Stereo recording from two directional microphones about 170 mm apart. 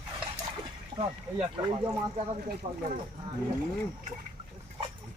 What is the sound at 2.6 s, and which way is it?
Speech, 40° right (ahead or behind).